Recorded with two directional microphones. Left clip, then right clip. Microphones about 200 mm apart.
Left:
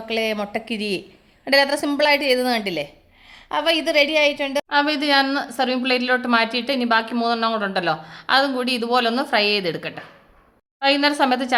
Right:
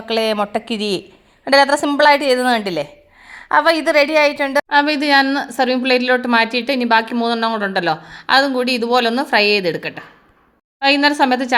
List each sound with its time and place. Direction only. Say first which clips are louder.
0.1 s a woman's voice: right 6 dB; 20° right (ahead or behind)